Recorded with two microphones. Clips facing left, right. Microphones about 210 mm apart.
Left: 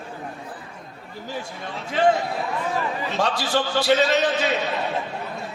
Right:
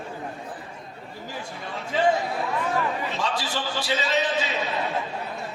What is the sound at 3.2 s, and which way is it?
A man's voice, 75° left (ahead or behind).